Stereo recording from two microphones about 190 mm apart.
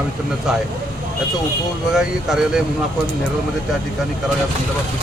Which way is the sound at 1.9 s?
Centre (ahead or behind).